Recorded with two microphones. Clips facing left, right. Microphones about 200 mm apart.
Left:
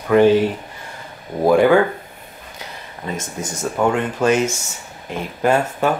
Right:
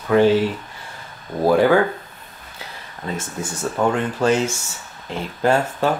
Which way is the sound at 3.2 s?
40° left (ahead or behind).